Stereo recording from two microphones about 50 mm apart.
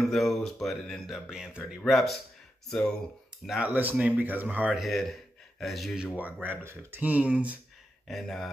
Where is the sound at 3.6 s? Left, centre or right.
Right.